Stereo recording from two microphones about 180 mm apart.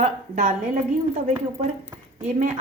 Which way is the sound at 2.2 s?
45° right (ahead or behind).